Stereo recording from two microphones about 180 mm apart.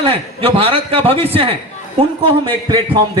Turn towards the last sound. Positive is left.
turn(degrees=-25)  # may be behind; listen again after turning